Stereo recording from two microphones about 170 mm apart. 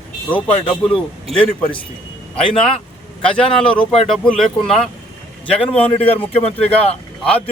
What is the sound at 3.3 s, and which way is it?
Speech, 5° left (ahead or behind).